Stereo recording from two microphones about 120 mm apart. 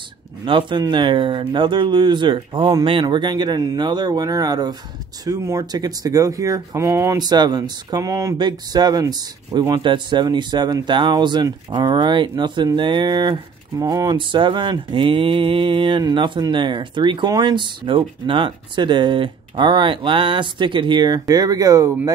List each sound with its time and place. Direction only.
0.5 s speech: 40° right (ahead or behind); by 7.2 s 25° right (ahead or behind)
7.2 s speech: 35° right (ahead or behind)
8.4 s speech: 35° right (ahead or behind)